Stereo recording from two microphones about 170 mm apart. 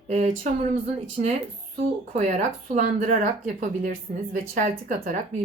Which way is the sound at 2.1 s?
45° right (ahead or behind).